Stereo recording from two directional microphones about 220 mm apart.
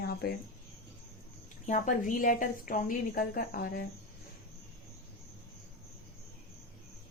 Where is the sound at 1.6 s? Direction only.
35° left (ahead or behind).